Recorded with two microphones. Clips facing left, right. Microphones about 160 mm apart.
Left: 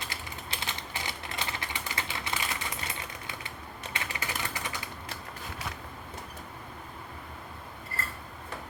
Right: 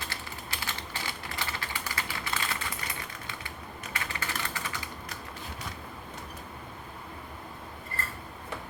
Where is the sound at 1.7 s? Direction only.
20° left (ahead or behind).